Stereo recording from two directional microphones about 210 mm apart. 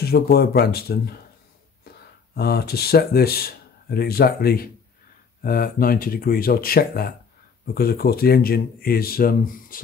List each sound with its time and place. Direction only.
0.0 s speech: 50° left (ahead or behind)
2.3 s speech: 50° left (ahead or behind)